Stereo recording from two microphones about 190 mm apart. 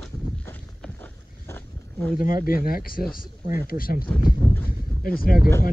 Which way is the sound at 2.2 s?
50° left (ahead or behind).